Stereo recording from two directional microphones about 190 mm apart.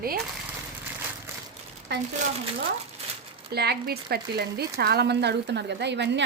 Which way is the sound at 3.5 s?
60° right (ahead or behind).